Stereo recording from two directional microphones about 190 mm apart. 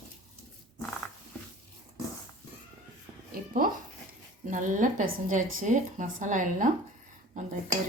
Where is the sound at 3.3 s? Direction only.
50° right (ahead or behind).